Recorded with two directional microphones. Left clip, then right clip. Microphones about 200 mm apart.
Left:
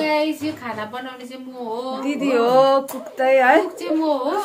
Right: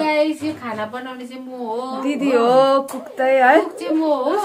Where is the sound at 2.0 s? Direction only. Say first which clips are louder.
Right 2 dB; 15° right (ahead or behind).